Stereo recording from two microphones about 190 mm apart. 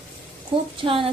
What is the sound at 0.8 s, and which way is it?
Speech, 25° right (ahead or behind).